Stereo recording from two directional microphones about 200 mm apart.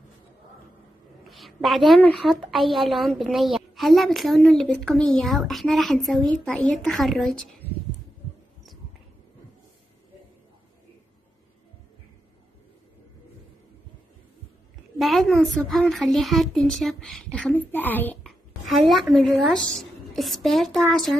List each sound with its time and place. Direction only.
1.2 s a woman's voice: centre (ahead or behind)
15.0 s a woman's voice: centre (ahead or behind)